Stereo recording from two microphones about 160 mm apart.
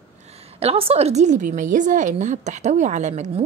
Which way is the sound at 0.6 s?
40° right (ahead or behind).